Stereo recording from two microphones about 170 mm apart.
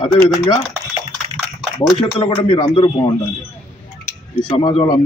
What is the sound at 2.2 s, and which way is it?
Speech, 30° left (ahead or behind).